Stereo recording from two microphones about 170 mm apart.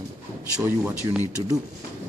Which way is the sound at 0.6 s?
15° right (ahead or behind).